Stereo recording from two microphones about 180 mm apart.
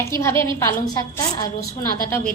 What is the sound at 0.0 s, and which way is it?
A woman's voice, 15° left (ahead or behind).